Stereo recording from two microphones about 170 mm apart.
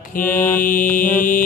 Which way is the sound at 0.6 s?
55° left (ahead or behind).